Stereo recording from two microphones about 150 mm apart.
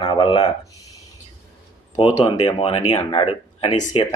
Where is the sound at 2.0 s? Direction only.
35° left (ahead or behind).